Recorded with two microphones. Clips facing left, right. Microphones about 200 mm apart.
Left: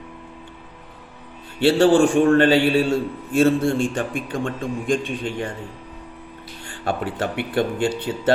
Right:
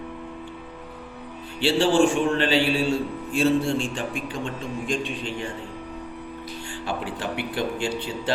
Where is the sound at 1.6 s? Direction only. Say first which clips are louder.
Left 4 dB; 55° left (ahead or behind).